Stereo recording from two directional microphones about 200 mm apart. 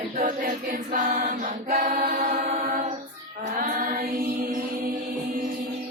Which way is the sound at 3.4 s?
35° right (ahead or behind).